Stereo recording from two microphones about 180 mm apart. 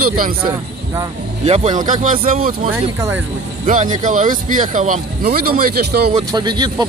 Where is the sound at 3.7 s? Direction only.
45° right (ahead or behind).